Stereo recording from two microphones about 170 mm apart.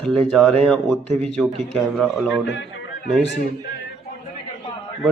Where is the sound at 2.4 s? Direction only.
90° left.